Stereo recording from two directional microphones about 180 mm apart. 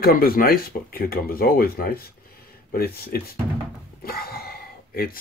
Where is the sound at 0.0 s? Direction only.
55° left (ahead or behind).